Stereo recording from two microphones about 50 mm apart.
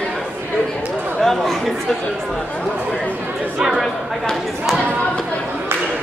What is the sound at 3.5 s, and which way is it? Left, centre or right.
Chatter, centre.